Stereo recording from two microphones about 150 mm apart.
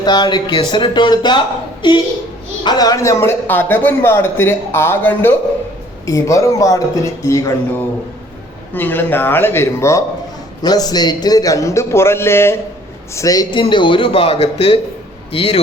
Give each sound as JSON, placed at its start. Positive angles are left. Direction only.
{"t": 0.0, "sound": "a man's voice", "side_deg": 30}